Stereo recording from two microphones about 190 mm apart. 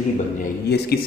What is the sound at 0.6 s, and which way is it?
Speech, 60° left (ahead or behind).